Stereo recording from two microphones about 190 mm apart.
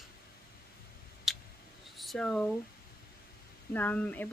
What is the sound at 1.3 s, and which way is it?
Tick, centre (ahead or behind).